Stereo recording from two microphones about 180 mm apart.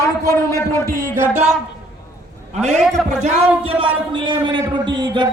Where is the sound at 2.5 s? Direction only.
40° right (ahead or behind).